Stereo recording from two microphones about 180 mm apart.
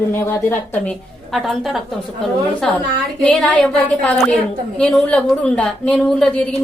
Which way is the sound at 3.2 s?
5° left (ahead or behind).